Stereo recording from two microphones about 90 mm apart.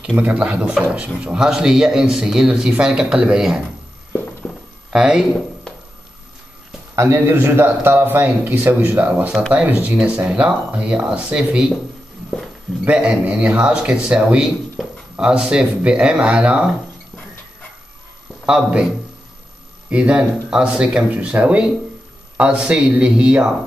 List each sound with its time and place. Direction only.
0.2 s a man's voice: 15° right (ahead or behind)
4.4 s a sound: centre (ahead or behind)
4.9 s a man's voice: 10° right (ahead or behind)
7.0 s a man's voice: 30° right (ahead or behind); by 11.6 s 15° right (ahead or behind)
12.9 s a man's voice: 10° right (ahead or behind)
18.4 s a man's voice: 10° right (ahead or behind)
19.9 s a man's voice: 15° right (ahead or behind)